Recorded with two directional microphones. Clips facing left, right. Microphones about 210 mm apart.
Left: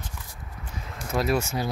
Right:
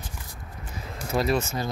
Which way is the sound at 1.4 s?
15° left (ahead or behind).